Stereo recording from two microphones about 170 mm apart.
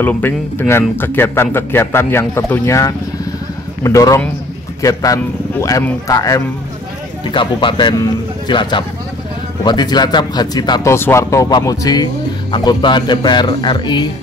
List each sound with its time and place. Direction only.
0.0 s speech: 10° left (ahead or behind)